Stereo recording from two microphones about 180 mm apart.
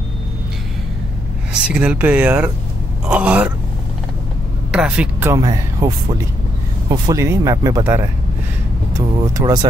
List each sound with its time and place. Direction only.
1.5 s speech: 5° right (ahead or behind)
4.7 s speech: 5° right (ahead or behind)
5.4 s speech: 20° right (ahead or behind)
6.9 s speech: 20° right (ahead or behind)